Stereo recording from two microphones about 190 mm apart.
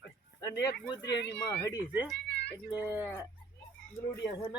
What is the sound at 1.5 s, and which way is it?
Speech, 15° left (ahead or behind).